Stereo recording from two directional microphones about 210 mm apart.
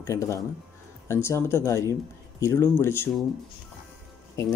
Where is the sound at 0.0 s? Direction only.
15° left (ahead or behind).